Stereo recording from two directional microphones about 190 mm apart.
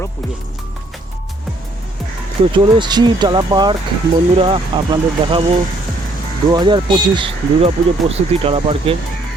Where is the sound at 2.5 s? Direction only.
25° right (ahead or behind).